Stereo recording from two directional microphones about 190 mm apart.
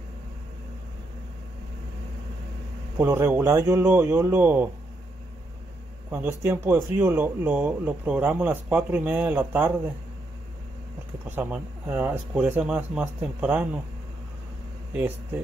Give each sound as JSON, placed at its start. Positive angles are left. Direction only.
{"t": 3.0, "sound": "speech", "side_deg": -10}
{"t": 6.0, "sound": "speech", "side_deg": -10}
{"t": 11.2, "sound": "speech", "side_deg": -10}